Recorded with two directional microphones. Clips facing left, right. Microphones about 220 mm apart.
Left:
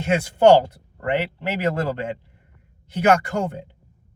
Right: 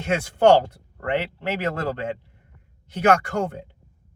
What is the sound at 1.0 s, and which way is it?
Speech, 15° left (ahead or behind).